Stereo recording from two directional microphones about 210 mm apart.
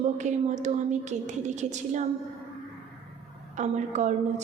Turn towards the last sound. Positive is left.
turn(degrees=-35)  # may be behind; listen again after turning